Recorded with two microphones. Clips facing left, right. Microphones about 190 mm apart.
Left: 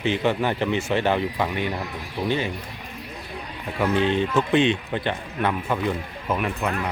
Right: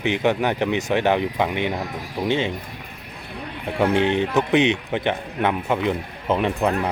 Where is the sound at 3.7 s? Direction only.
25° right (ahead or behind).